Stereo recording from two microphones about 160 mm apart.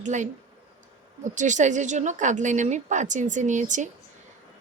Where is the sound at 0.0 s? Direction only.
50° right (ahead or behind).